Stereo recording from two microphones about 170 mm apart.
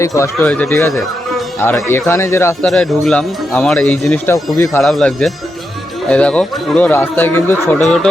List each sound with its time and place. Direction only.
0.0 s speech: 15° left (ahead or behind)
0.3 s speech: 5° left (ahead or behind)
2.6 s speech: centre (ahead or behind)
4.8 s speech: centre (ahead or behind)